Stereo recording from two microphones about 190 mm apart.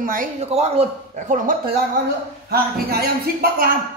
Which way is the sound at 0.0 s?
45° right (ahead or behind).